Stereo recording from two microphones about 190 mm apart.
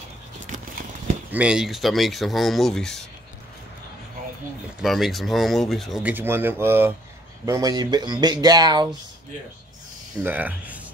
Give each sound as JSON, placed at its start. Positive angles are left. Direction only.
{"t": 1.3, "sound": "speech", "side_deg": -5}
{"t": 4.7, "sound": "speech", "side_deg": 0}
{"t": 10.2, "sound": "speech", "side_deg": -10}